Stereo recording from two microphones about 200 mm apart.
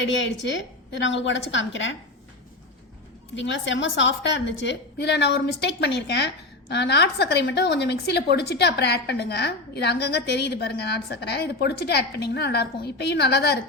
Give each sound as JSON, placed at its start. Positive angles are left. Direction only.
{"t": 0.0, "sound": "a woman's voice", "side_deg": 65}
{"t": 3.3, "sound": "a woman's voice", "side_deg": 65}